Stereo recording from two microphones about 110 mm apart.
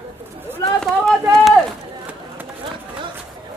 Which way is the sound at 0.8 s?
Centre (ahead or behind).